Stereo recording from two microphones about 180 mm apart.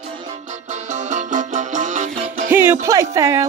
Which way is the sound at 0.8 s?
40° right (ahead or behind).